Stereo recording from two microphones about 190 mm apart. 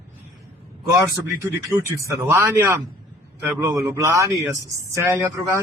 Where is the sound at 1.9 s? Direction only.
15° right (ahead or behind).